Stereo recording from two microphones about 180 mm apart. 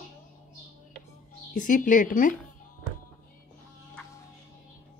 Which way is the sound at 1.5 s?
45° left (ahead or behind).